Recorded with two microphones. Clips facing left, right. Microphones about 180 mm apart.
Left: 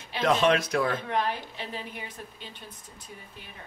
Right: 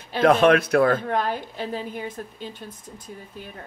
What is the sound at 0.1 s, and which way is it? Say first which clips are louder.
Speech: right 7 dB; 55° right (ahead or behind).